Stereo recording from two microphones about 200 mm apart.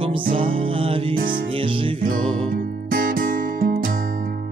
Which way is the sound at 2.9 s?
45° right (ahead or behind).